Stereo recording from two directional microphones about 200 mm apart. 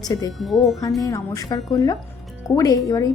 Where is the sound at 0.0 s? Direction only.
20° left (ahead or behind).